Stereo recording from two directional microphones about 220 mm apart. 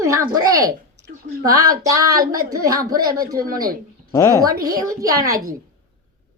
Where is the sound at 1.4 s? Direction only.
15° right (ahead or behind).